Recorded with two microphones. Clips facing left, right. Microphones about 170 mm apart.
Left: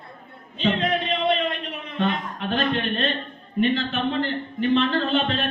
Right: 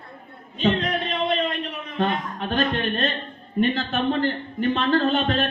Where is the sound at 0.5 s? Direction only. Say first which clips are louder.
Even; 40° right (ahead or behind).